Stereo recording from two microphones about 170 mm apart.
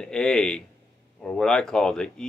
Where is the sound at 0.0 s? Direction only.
5° left (ahead or behind).